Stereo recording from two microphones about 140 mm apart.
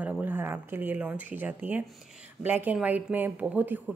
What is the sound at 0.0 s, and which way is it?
A woman's voice, 10° right (ahead or behind).